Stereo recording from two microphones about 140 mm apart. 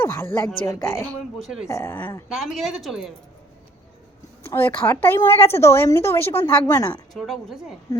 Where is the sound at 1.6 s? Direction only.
20° left (ahead or behind).